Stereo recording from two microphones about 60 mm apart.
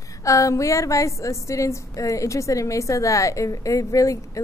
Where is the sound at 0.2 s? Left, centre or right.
Left.